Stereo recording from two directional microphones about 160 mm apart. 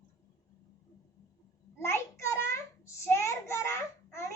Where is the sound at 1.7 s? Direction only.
15° left (ahead or behind).